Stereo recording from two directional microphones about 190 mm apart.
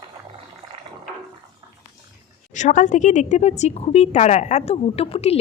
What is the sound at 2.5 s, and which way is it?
A woman's voice, 40° left (ahead or behind).